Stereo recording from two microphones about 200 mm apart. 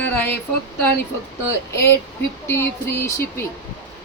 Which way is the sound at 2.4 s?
10° left (ahead or behind).